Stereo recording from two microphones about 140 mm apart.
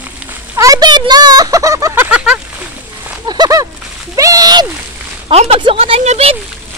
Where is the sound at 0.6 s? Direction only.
25° right (ahead or behind); by 2.3 s 10° right (ahead or behind).